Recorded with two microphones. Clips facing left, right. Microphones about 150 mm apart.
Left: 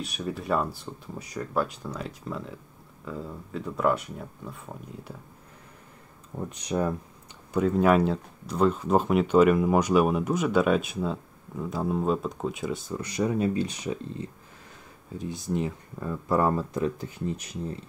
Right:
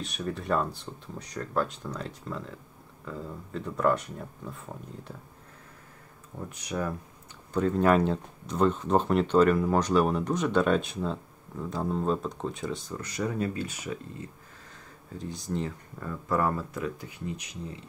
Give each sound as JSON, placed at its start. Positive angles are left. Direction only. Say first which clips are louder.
{"t": 0.0, "sound": "speech", "louder": "left 1 dB", "side_deg": 5}
{"t": 6.7, "sound": "speech", "louder": "left 5 dB", "side_deg": 25}
{"t": 7.5, "sound": "speech", "louder": "left 2 dB", "side_deg": 5}
{"t": 15.5, "sound": "speech", "louder": "left 3 dB", "side_deg": 15}